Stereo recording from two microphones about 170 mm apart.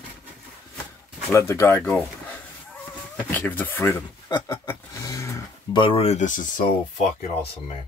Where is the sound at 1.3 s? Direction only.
15° left (ahead or behind).